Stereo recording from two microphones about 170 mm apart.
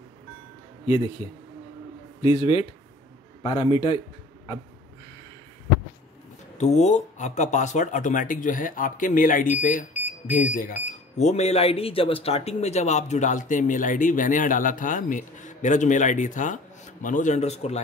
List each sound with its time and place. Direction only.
0.8 s a man's voice: 35° left (ahead or behind)
2.2 s a man's voice: 35° left (ahead or behind)
6.6 s speech: 45° left (ahead or behind)
11.1 s speech: 40° left (ahead or behind)